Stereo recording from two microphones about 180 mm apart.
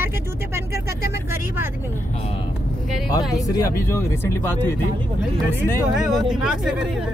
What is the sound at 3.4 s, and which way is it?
Speech, 20° left (ahead or behind).